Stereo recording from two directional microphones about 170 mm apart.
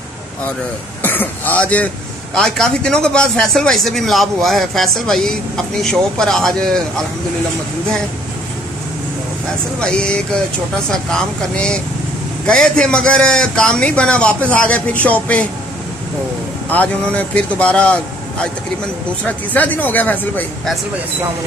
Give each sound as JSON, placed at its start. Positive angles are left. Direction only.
{"t": 1.0, "sound": "a man's voice", "side_deg": 10}
{"t": 9.8, "sound": "a man's voice", "side_deg": 5}
{"t": 16.6, "sound": "speech", "side_deg": 10}